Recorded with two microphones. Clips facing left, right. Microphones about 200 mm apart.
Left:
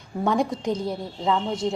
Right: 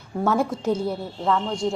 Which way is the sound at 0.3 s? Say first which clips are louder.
Even; 5° right (ahead or behind).